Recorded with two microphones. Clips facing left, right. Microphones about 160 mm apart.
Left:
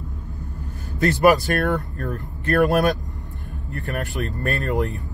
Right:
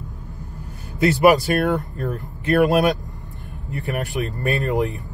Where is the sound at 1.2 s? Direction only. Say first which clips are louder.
Right 1 dB; 20° right (ahead or behind).